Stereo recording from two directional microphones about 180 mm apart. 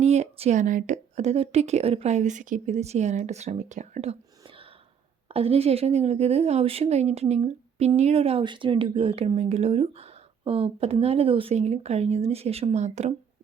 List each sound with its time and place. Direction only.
0.0 s speech: 40° right (ahead or behind)